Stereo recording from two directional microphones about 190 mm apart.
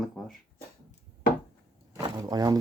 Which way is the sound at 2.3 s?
20° right (ahead or behind).